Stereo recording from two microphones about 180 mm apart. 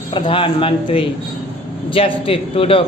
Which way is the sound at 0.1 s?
30° left (ahead or behind).